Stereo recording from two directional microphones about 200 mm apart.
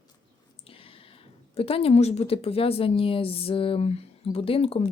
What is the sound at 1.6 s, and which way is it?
Speech, 30° left (ahead or behind).